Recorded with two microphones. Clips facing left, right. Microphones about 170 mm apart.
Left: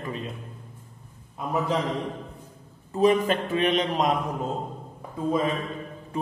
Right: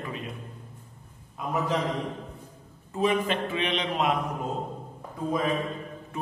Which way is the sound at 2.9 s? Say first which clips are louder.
Left 5 dB; 40° left (ahead or behind).